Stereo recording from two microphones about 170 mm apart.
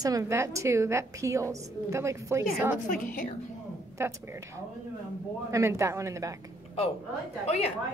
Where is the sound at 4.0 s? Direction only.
15° right (ahead or behind).